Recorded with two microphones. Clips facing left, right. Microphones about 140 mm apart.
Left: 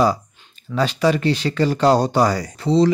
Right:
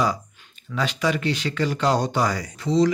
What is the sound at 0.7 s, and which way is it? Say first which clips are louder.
Speech: left 6 dB; 35° left (ahead or behind).